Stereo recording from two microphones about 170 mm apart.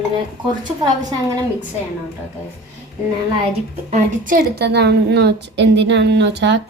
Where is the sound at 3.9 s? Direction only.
50° right (ahead or behind).